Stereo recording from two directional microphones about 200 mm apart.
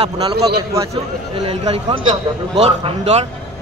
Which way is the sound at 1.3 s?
30° right (ahead or behind).